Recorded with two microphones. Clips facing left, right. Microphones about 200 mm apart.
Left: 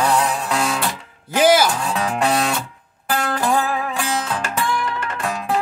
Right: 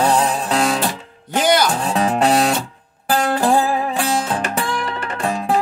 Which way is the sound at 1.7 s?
30° right (ahead or behind).